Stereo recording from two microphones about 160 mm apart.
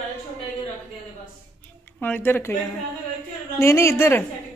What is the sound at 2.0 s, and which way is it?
Speech, 10° left (ahead or behind).